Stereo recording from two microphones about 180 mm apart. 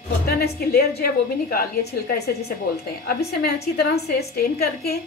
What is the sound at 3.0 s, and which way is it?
A woman's voice, 60° left (ahead or behind).